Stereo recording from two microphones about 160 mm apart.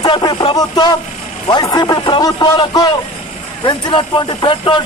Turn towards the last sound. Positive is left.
turn(degrees=30)  # may be behind; listen again after turning